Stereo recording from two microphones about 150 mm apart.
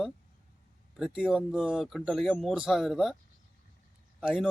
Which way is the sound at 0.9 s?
5° right (ahead or behind).